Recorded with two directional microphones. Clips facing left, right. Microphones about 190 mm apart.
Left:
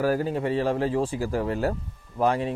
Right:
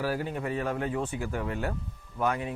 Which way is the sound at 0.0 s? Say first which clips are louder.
Left 7 dB; 40° left (ahead or behind).